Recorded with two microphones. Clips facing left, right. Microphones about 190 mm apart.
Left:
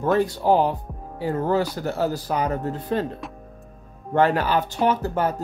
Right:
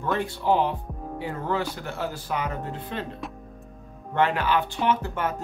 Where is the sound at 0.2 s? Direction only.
40° left (ahead or behind).